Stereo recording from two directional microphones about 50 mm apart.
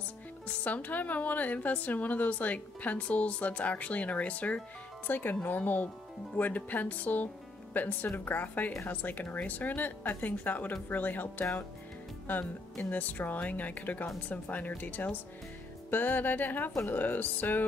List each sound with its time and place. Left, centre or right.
0.7 s a woman's voice: left
5.0 s speech: left